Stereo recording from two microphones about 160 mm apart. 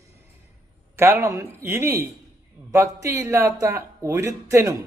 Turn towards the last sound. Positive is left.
turn(degrees=-20)  # may be behind; listen again after turning